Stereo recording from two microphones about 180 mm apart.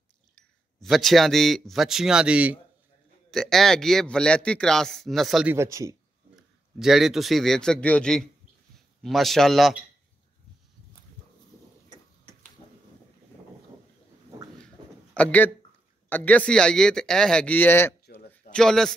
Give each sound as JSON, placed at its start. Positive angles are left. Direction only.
{"t": 0.8, "sound": "a man's voice", "side_deg": 0}
{"t": 5.5, "sound": "speech", "side_deg": -15}
{"t": 6.3, "sound": "a man's voice", "side_deg": 0}
{"t": 15.1, "sound": "a man's voice", "side_deg": 10}